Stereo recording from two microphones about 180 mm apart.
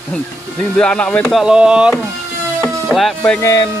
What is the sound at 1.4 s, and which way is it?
Speech, 5° right (ahead or behind).